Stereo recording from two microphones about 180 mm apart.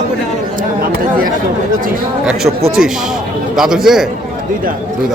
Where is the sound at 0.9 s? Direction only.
55° right (ahead or behind).